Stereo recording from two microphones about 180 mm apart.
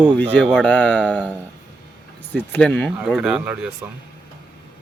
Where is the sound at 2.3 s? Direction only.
10° left (ahead or behind).